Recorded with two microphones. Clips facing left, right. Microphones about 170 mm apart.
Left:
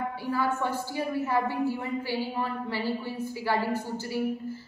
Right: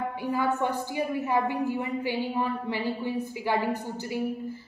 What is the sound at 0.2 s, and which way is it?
A woman's voice, 20° right (ahead or behind).